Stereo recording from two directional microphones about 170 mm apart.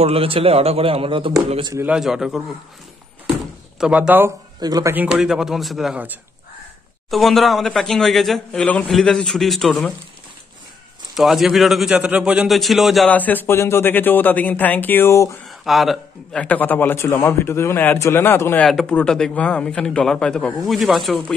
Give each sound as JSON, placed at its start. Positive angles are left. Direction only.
{"t": 0.0, "sound": "a man's voice", "side_deg": -35}
{"t": 1.7, "sound": "speech", "side_deg": -15}
{"t": 2.0, "sound": "speech", "side_deg": -5}
{"t": 3.8, "sound": "speech", "side_deg": -5}
{"t": 4.6, "sound": "speech", "side_deg": -25}
{"t": 4.9, "sound": "speech", "side_deg": -5}
{"t": 11.1, "sound": "a man's voice", "side_deg": 0}
{"t": 15.4, "sound": "a man's voice", "side_deg": 0}